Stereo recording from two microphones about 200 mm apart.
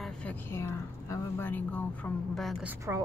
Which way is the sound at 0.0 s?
5° left (ahead or behind).